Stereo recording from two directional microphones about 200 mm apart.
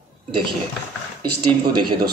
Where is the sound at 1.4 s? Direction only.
20° right (ahead or behind).